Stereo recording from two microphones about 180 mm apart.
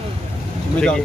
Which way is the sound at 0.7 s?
5° left (ahead or behind).